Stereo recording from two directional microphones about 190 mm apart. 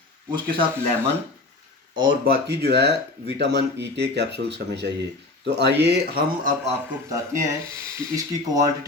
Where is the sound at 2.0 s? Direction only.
50° right (ahead or behind).